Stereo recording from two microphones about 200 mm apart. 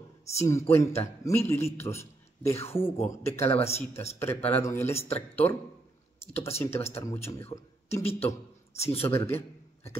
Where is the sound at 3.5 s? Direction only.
30° left (ahead or behind).